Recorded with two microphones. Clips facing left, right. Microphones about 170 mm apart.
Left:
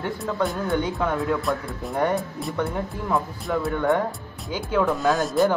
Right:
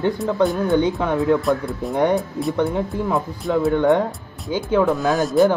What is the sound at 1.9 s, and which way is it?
Speech, 20° right (ahead or behind).